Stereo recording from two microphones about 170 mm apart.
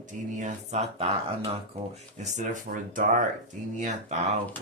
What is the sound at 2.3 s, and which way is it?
Speech, 50° right (ahead or behind).